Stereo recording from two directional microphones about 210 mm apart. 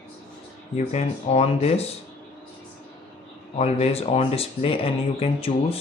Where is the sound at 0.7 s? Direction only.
30° left (ahead or behind).